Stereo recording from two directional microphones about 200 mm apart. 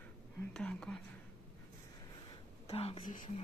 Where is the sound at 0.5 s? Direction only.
5° left (ahead or behind).